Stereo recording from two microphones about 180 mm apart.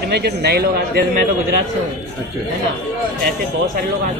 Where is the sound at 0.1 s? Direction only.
65° right (ahead or behind).